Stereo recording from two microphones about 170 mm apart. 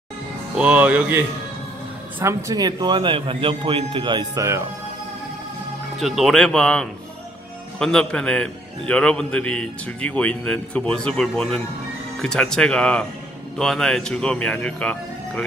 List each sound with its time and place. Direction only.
0.6 s a man's voice: 5° right (ahead or behind)
5.9 s a man's voice: centre (ahead or behind)